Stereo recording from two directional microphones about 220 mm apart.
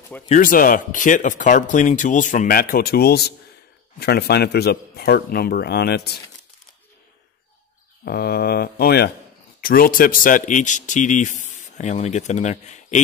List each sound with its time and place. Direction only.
0.3 s a man's voice: 40° left (ahead or behind)
8.0 s a man's voice: 45° left (ahead or behind)